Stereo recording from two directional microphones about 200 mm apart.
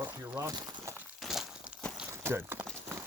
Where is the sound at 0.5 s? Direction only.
20° right (ahead or behind).